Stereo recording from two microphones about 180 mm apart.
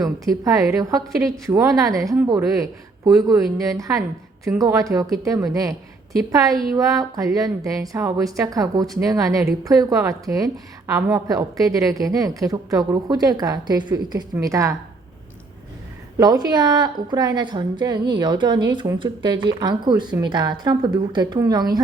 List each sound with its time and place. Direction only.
0.0 s a woman's voice: 20° right (ahead or behind)
6.5 s speech: centre (ahead or behind)
6.7 s a woman's voice: 20° right (ahead or behind)
16.1 s a woman's voice: 20° right (ahead or behind)